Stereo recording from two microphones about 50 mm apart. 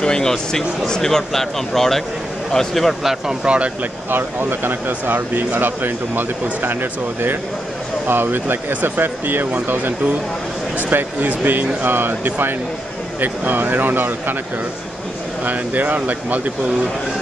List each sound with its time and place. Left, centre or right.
0.0 s speech: centre
3.4 s speech: right
4.1 s speech: right
15.4 s speech: right